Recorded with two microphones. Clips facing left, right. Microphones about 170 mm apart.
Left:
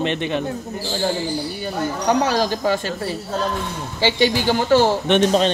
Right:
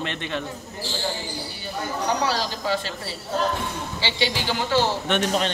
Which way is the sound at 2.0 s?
50° left (ahead or behind).